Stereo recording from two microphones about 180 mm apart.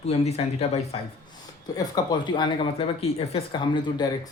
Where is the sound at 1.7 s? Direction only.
20° left (ahead or behind).